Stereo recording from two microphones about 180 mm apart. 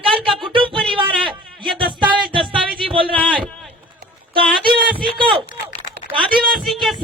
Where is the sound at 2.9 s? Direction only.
30° right (ahead or behind).